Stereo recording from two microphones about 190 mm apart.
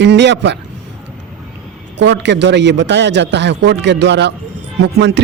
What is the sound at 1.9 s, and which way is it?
A man's voice, 65° right (ahead or behind).